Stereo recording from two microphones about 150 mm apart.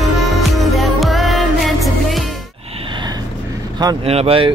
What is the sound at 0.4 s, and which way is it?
Music, centre (ahead or behind).